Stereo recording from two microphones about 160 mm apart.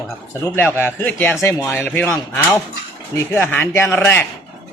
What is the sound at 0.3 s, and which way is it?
Speech, 15° left (ahead or behind).